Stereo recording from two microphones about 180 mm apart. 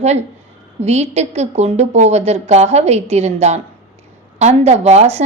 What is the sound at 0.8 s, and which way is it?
A woman's voice, 35° right (ahead or behind).